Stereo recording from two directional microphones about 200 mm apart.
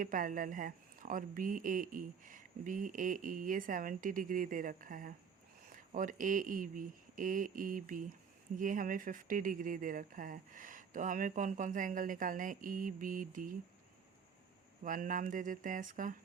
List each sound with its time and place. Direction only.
0.0 s speech: 45° right (ahead or behind)
14.8 s speech: 40° right (ahead or behind)